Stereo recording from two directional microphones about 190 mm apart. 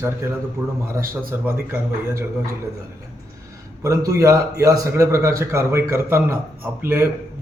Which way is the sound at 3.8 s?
15° right (ahead or behind).